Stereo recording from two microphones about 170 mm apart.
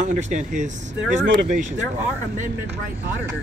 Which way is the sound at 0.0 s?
45° right (ahead or behind).